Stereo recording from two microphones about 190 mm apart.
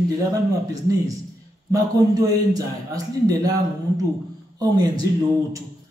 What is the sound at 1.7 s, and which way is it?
A man's voice, 20° right (ahead or behind).